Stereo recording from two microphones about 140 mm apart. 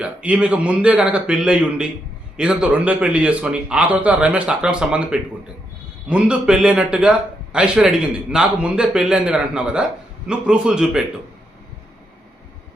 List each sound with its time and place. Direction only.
0.0 s a man's voice: 10° right (ahead or behind)
6.1 s a man's voice: 10° right (ahead or behind)